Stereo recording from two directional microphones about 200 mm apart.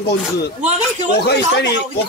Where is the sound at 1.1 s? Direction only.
55° left (ahead or behind).